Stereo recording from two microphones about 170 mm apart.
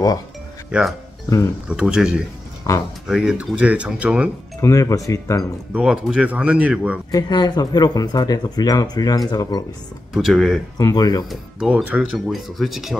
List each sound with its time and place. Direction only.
0.7 s speech: 5° right (ahead or behind)
2.7 s speech: 20° left (ahead or behind)
3.1 s speech: 5° right (ahead or behind)
4.6 s speech: 15° left (ahead or behind)
5.7 s speech: 5° right (ahead or behind)
7.1 s speech: 25° left (ahead or behind)
10.1 s speech: centre (ahead or behind)
10.8 s speech: 20° left (ahead or behind)
11.2 s speech: 5° right (ahead or behind)